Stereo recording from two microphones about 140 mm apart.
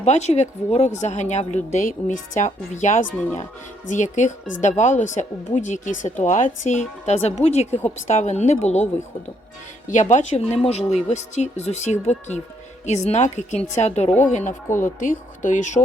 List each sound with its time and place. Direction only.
0.0 s speech: 55° left (ahead or behind)
9.9 s speech: 60° left (ahead or behind)